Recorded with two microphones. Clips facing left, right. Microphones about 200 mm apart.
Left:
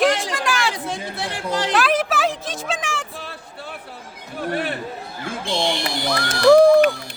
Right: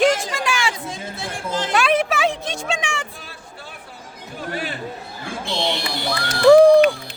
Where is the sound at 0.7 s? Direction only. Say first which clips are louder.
Left 3 dB; 65° left (ahead or behind).